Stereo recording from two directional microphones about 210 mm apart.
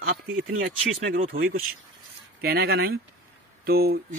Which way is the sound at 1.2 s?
45° right (ahead or behind).